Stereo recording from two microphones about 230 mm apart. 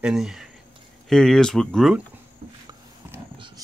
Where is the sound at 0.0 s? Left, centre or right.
Centre.